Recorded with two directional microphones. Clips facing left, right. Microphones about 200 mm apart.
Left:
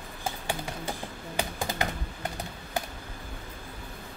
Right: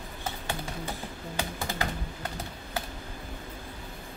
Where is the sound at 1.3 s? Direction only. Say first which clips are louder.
Left 2 dB; 15° left (ahead or behind).